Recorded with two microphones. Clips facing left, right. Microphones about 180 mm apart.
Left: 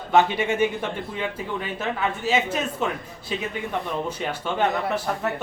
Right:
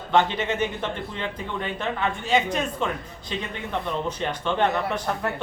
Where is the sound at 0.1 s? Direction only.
10° left (ahead or behind).